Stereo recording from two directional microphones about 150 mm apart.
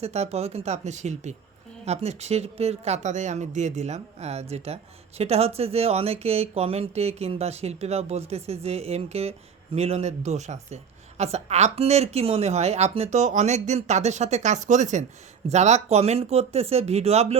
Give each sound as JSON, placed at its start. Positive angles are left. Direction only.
{"t": 0.0, "sound": "speech", "side_deg": -45}